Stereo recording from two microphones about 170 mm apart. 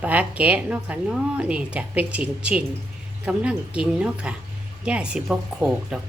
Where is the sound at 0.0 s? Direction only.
10° right (ahead or behind).